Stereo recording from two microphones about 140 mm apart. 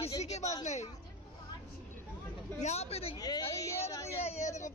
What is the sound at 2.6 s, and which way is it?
Speech, 50° left (ahead or behind).